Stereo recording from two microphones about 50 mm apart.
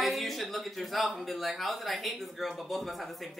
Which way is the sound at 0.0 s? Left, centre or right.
Centre.